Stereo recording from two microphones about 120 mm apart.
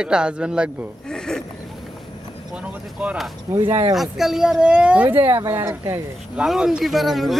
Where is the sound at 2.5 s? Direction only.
10° right (ahead or behind).